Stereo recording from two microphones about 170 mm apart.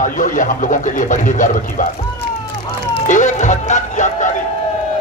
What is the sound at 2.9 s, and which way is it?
Speech, 45° left (ahead or behind).